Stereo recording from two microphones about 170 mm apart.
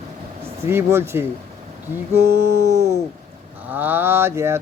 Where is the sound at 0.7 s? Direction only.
15° right (ahead or behind).